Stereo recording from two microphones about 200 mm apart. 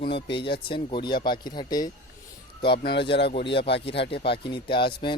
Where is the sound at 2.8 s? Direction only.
55° left (ahead or behind).